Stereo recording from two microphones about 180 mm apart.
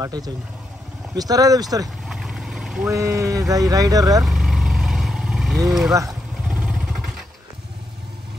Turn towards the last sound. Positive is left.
turn(degrees=0)  # may be behind; listen again after turning